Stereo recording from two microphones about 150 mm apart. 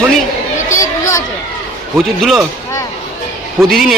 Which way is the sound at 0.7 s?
20° left (ahead or behind).